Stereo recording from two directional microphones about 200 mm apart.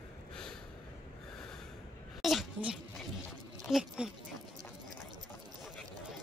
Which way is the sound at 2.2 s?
Centre (ahead or behind).